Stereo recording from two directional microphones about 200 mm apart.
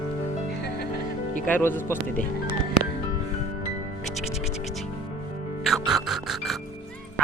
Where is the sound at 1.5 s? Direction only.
10° left (ahead or behind).